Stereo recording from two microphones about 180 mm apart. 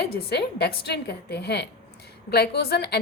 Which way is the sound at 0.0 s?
65° left (ahead or behind).